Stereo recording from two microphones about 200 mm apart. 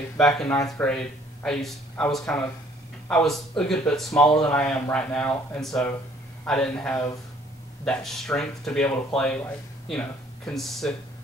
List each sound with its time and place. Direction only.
0.2 s speech: 5° left (ahead or behind)